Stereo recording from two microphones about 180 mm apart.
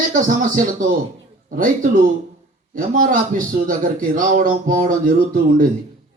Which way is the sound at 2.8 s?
50° right (ahead or behind).